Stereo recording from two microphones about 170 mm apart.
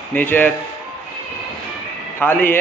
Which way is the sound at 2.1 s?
10° left (ahead or behind).